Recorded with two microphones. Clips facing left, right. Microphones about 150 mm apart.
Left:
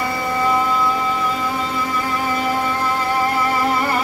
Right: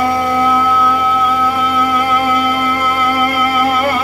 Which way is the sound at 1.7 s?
80° right.